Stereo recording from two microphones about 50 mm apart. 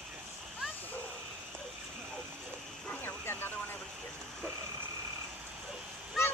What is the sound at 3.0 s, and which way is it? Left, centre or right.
Vehicle, left.